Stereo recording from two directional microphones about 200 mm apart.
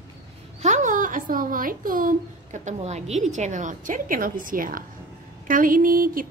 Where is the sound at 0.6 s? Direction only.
35° right (ahead or behind).